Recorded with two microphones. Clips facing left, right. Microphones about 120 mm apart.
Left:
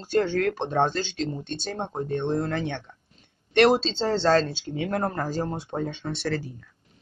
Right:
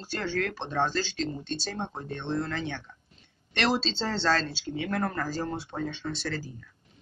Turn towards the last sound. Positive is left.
turn(degrees=60)  # may be behind; listen again after turning